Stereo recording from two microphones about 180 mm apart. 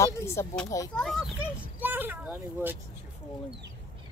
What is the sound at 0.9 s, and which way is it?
Speech, centre (ahead or behind).